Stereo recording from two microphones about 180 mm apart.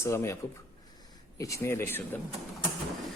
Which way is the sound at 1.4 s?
15° left (ahead or behind).